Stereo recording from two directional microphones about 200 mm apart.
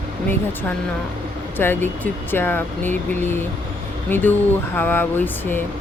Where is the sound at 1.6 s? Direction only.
10° left (ahead or behind).